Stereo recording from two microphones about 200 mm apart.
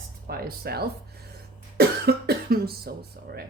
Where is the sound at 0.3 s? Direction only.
50° right (ahead or behind).